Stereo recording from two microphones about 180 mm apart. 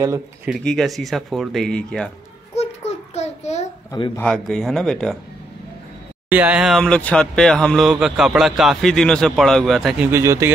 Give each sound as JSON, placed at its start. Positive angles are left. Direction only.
{"t": 0.5, "sound": "speech", "side_deg": 0}
{"t": 3.2, "sound": "child singing", "side_deg": 40}
{"t": 3.9, "sound": "speech", "side_deg": 20}
{"t": 4.2, "sound": "speech", "side_deg": 5}
{"t": 6.2, "sound": "speech", "side_deg": -10}
{"t": 10.1, "sound": "speech", "side_deg": -15}